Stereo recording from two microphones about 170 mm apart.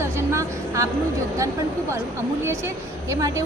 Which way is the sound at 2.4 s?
15° right (ahead or behind).